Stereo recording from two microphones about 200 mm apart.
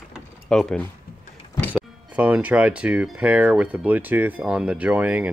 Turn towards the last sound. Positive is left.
turn(degrees=-10)  # may be behind; listen again after turning